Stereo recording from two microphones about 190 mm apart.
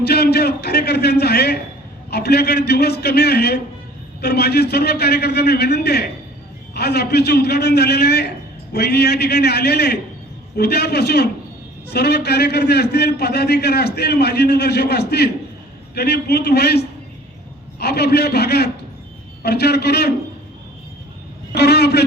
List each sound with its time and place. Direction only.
0.0 s a man's voice: 60° left (ahead or behind)
21.5 s a man's voice: 60° left (ahead or behind)